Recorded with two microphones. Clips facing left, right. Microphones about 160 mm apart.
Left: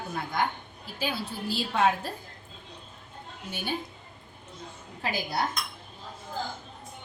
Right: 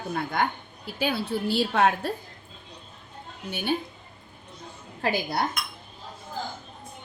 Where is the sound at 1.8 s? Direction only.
65° right (ahead or behind).